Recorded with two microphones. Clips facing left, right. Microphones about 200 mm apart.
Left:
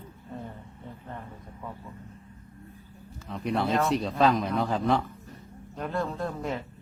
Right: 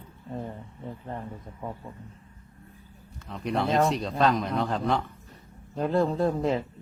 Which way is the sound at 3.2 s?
Centre (ahead or behind).